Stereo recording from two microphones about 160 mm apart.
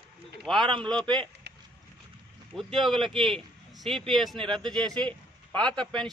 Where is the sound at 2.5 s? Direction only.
Centre (ahead or behind).